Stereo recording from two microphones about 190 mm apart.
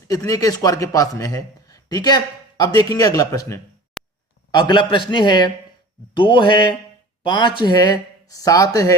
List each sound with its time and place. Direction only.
0.1 s a man's voice: 20° left (ahead or behind)
4.0 s a sound: 5° left (ahead or behind)
4.5 s a man's voice: 25° left (ahead or behind)